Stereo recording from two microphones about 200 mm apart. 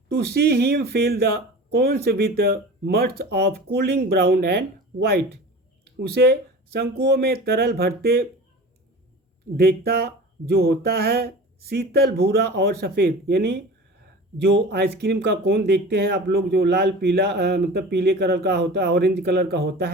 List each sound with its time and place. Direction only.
0.1 s speech: 50° right (ahead or behind)
9.6 s speech: 50° right (ahead or behind)